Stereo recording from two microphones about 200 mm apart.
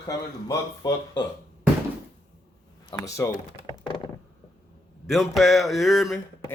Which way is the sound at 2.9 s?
15° left (ahead or behind).